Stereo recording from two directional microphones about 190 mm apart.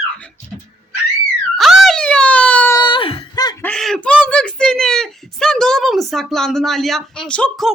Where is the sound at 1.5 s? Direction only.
Centre (ahead or behind).